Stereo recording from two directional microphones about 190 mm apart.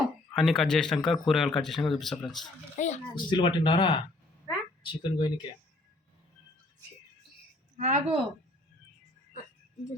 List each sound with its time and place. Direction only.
0.3 s speech: centre (ahead or behind)
2.7 s speech: 40° left (ahead or behind)
3.2 s speech: 25° left (ahead or behind)
4.4 s a sound: 25° left (ahead or behind)
7.8 s a woman's voice: 40° right (ahead or behind)